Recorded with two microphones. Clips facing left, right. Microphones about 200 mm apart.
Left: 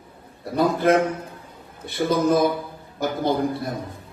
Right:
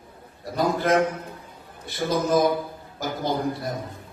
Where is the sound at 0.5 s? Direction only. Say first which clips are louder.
Left 3 dB; 60° left (ahead or behind).